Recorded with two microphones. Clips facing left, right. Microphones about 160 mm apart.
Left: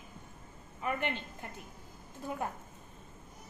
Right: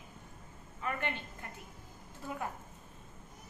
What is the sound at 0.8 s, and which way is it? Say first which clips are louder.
Speech: left 3 dB; 20° left (ahead or behind).